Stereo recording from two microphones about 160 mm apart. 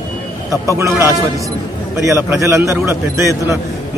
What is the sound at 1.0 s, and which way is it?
A man's voice, 20° right (ahead or behind).